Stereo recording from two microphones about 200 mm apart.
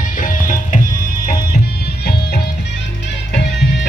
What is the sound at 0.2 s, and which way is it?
Music, 40° left (ahead or behind).